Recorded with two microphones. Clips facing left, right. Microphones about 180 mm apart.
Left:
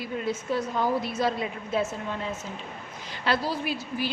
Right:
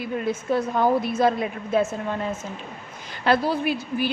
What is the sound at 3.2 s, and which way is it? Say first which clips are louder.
Speech: right 6 dB; 55° right (ahead or behind).